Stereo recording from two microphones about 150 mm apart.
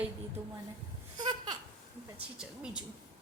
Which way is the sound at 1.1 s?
25° right (ahead or behind).